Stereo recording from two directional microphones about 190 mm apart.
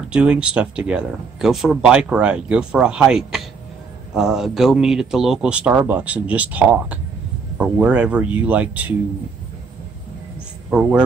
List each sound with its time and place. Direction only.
0.1 s speech: 5° right (ahead or behind)
10.7 s a man's voice: 5° right (ahead or behind)